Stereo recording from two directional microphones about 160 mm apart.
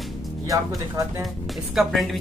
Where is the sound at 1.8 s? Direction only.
Centre (ahead or behind).